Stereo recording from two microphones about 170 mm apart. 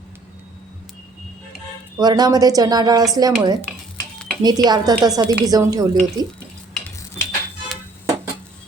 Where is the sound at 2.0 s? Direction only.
25° right (ahead or behind).